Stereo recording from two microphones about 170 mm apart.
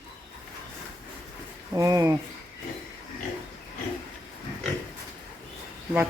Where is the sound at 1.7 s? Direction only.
20° right (ahead or behind).